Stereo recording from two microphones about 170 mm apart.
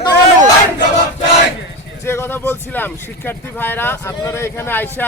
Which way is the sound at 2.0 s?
15° left (ahead or behind).